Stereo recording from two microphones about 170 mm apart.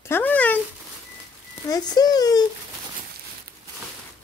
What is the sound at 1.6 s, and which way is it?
Speech, 20° left (ahead or behind).